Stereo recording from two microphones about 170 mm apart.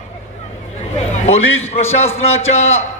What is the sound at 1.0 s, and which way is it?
A man's voice, 40° left (ahead or behind).